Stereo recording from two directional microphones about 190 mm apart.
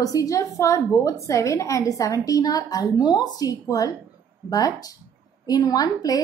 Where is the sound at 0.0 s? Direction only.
15° left (ahead or behind).